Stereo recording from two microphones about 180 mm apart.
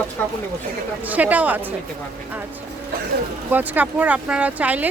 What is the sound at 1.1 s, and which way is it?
Speech, 10° right (ahead or behind).